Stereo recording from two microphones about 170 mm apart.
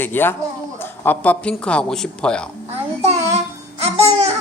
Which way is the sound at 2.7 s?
35° right (ahead or behind).